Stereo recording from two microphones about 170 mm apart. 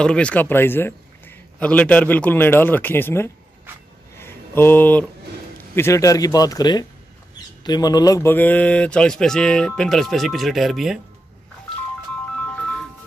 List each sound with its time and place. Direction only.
0.0 s a man's voice: 5° left (ahead or behind)
4.2 s a sound: 15° left (ahead or behind)
5.8 s speech: 15° left (ahead or behind); by 11.0 s centre (ahead or behind)